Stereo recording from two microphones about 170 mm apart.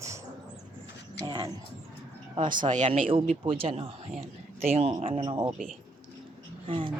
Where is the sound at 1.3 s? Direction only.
25° right (ahead or behind).